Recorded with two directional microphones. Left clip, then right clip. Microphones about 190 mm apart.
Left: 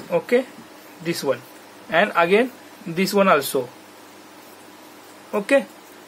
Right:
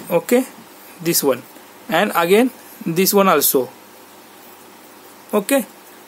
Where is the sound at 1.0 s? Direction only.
65° right (ahead or behind).